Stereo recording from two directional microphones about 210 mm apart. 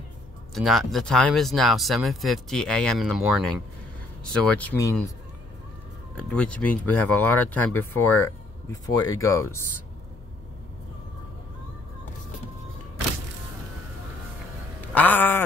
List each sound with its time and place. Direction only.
0.6 s speech: centre (ahead or behind)
6.1 s speech: 5° left (ahead or behind)
14.8 s a sound: 10° left (ahead or behind)